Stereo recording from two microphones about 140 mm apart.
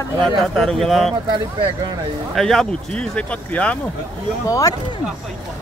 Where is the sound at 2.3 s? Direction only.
5° left (ahead or behind).